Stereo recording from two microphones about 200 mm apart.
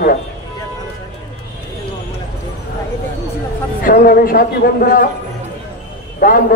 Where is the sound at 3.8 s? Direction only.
45° left (ahead or behind).